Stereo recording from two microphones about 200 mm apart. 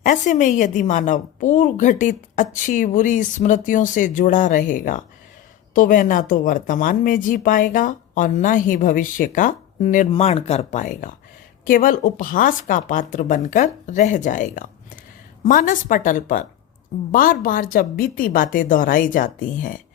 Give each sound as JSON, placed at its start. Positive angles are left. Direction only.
{"t": 0.0, "sound": "a woman's voice", "side_deg": 40}